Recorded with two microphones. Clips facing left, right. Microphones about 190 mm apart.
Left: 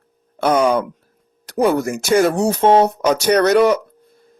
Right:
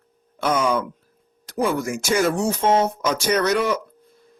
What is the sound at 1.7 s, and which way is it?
Speech, 40° left (ahead or behind).